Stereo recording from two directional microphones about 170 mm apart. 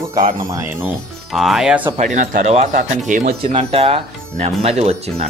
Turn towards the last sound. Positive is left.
turn(degrees=-40)  # may be behind; listen again after turning